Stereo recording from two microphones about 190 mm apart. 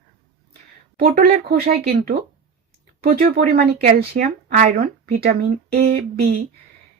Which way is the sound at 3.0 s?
50° right (ahead or behind).